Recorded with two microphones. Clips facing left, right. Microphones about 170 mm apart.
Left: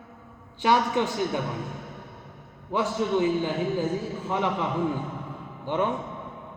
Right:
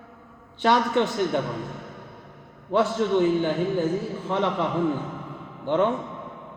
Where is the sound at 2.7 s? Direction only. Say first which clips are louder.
Right 4 dB; 10° left (ahead or behind).